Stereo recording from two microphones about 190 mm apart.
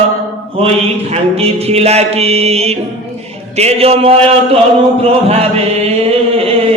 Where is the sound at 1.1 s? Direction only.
30° right (ahead or behind).